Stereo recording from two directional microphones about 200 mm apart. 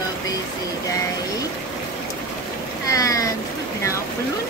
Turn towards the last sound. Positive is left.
turn(degrees=15)  # may be behind; listen again after turning